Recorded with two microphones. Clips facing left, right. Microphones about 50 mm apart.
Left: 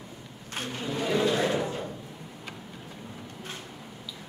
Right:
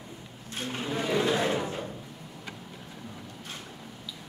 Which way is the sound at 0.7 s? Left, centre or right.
Centre.